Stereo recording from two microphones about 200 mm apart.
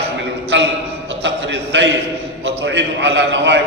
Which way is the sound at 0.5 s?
65° right (ahead or behind).